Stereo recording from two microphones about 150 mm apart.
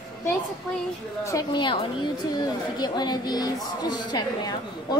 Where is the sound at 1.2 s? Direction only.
25° left (ahead or behind).